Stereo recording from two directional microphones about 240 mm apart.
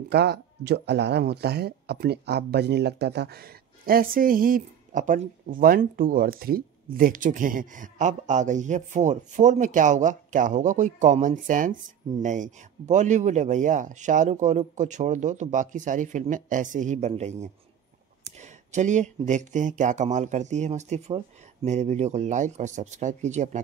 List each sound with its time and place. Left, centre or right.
0.1 s speech: right